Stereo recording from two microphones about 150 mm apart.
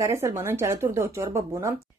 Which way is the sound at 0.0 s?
20° right (ahead or behind).